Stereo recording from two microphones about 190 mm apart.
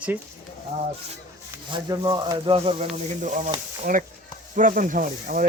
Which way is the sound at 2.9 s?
40° right (ahead or behind).